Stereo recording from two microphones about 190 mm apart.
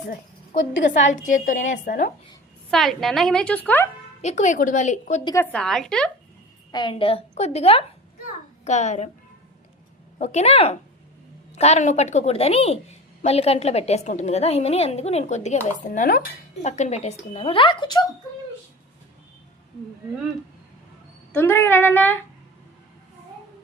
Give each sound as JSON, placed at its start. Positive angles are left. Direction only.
{"t": 0.9, "sound": "a woman's voice", "side_deg": 40}
{"t": 2.6, "sound": "a woman's voice", "side_deg": 0}
{"t": 4.2, "sound": "a woman's voice", "side_deg": 35}
{"t": 5.2, "sound": "a woman's voice", "side_deg": 15}
{"t": 6.7, "sound": "a woman's voice", "side_deg": 25}
{"t": 10.2, "sound": "a woman's voice", "side_deg": 35}
{"t": 15.6, "sound": "a woman's voice", "side_deg": 45}
{"t": 16.6, "sound": "speech", "side_deg": 35}
{"t": 21.3, "sound": "speech", "side_deg": 10}